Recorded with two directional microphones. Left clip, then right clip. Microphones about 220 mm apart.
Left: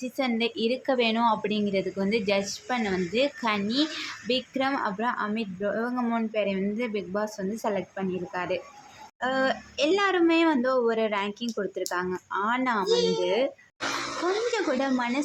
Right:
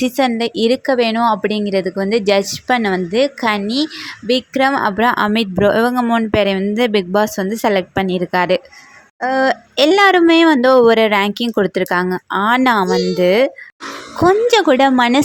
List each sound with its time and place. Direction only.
0.0 s a woman's voice: 35° right (ahead or behind)
14.5 s a woman's voice: 40° right (ahead or behind)